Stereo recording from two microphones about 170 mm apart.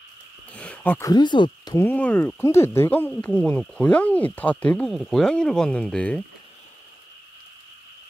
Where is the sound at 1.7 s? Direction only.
10° left (ahead or behind).